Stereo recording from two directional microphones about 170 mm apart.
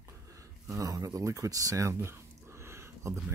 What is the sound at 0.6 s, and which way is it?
Speech, 20° right (ahead or behind).